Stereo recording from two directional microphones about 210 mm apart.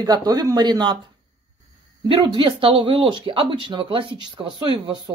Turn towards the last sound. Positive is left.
turn(degrees=-20)  # may be behind; listen again after turning